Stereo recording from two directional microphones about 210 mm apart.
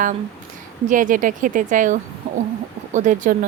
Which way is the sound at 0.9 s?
40° right (ahead or behind).